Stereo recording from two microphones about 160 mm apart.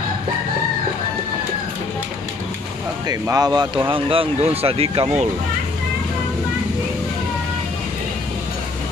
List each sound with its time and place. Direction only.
3.1 s speech: 25° right (ahead or behind); by 5.3 s 40° right (ahead or behind)